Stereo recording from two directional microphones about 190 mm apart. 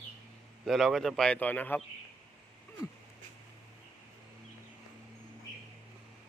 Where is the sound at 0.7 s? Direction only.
Centre (ahead or behind).